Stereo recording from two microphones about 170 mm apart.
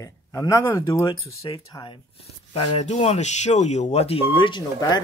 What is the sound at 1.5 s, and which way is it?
Speech, 30° left (ahead or behind).